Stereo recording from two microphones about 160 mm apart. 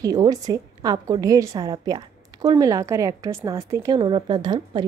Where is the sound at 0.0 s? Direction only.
25° right (ahead or behind).